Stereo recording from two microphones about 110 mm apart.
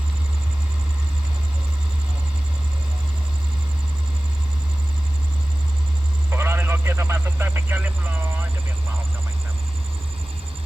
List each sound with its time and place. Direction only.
6.3 s vehicle: 20° right (ahead or behind)